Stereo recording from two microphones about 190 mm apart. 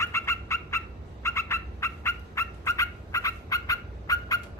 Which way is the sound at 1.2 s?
15° left (ahead or behind).